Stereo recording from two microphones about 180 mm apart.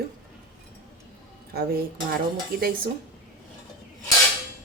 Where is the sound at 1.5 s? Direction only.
60° right (ahead or behind).